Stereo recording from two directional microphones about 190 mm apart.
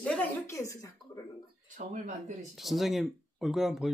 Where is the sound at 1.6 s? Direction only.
40° right (ahead or behind).